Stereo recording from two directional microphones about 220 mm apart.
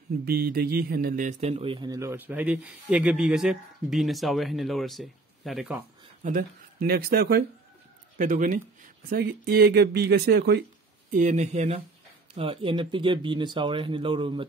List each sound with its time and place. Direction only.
0.2 s speech: 45° right (ahead or behind); by 5.8 s centre (ahead or behind)
6.2 s speech: 40° right (ahead or behind)
11.1 s speech: 35° right (ahead or behind)